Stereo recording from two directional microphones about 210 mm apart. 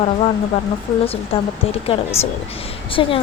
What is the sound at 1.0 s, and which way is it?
A woman's voice, 25° left (ahead or behind).